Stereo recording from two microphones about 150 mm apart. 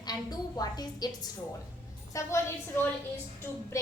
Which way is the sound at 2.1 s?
20° left (ahead or behind).